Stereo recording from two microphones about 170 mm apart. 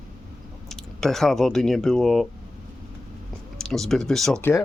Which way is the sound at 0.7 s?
Centre (ahead or behind).